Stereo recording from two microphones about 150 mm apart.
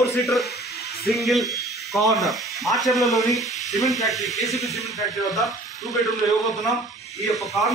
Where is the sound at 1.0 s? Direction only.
Centre (ahead or behind).